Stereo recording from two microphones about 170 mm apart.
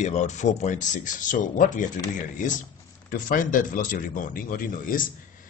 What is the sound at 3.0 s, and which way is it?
Speech, 55° left (ahead or behind).